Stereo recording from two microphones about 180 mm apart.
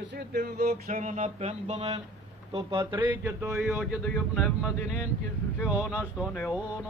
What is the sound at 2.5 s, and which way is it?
Speech, 25° right (ahead or behind).